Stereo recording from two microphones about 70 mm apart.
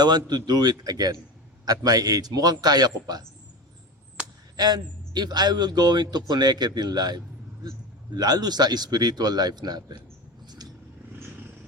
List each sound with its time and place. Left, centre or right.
0.0 s speech: right
4.5 s a man's voice: right
10.4 s vehicle: right